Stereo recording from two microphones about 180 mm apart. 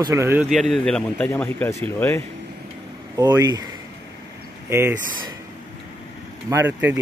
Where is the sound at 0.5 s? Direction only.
Centre (ahead or behind).